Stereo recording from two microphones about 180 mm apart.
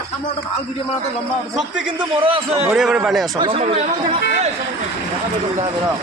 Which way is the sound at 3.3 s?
25° right (ahead or behind).